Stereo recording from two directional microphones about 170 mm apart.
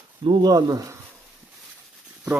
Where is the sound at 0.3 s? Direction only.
25° right (ahead or behind).